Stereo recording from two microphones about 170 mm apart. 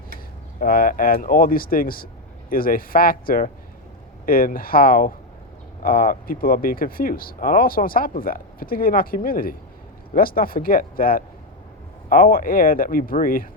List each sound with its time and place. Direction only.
0.6 s speech: 55° left (ahead or behind)